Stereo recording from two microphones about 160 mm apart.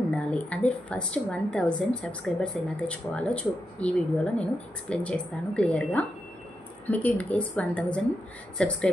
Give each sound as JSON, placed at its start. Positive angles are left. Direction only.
{"t": 0.1, "sound": "speech", "side_deg": 10}